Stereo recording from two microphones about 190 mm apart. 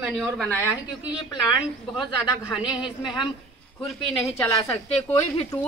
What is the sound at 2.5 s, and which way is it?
Speech, 5° right (ahead or behind).